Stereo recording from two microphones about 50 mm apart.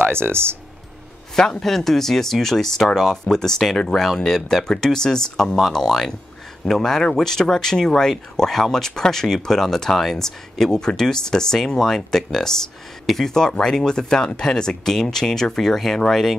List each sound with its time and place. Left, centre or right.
0.0 s speech: right
1.3 s speech: centre